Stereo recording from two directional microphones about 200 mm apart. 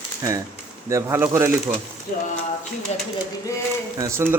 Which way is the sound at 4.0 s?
15° right (ahead or behind).